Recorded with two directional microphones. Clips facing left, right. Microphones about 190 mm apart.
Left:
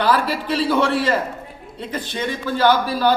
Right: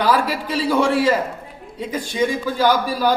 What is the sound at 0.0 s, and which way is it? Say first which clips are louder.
A man's voice: even; 10° right (ahead or behind).